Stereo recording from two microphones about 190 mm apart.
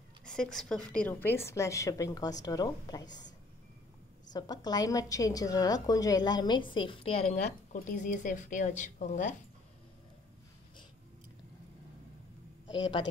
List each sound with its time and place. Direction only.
0.2 s a woman's voice: 5° left (ahead or behind); by 3.1 s 20° left (ahead or behind)
4.3 s a woman's voice: 20° left (ahead or behind); by 9.3 s 40° left (ahead or behind)